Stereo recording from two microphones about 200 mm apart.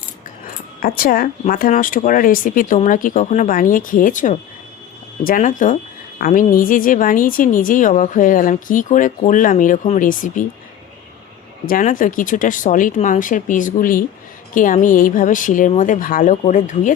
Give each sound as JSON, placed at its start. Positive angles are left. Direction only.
{"t": 0.4, "sound": "a woman's voice", "side_deg": 45}
{"t": 11.6, "sound": "a woman's voice", "side_deg": 45}